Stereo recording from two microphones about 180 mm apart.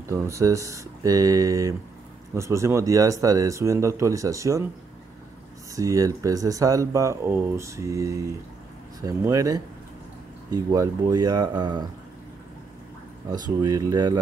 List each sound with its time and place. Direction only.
0.1 s speech: 15° right (ahead or behind)
5.8 s speech: 20° right (ahead or behind)
13.3 s speech: 20° right (ahead or behind)